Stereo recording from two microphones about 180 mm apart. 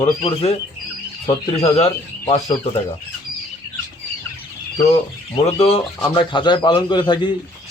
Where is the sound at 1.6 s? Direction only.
35° left (ahead or behind).